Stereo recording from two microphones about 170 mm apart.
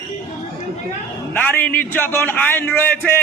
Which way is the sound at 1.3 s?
10° left (ahead or behind).